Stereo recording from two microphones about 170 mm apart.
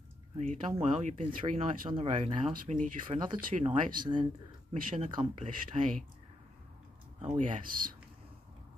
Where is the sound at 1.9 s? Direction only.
40° right (ahead or behind).